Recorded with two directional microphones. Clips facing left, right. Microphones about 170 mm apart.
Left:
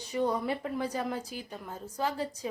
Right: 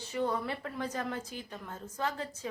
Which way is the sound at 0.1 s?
15° left (ahead or behind).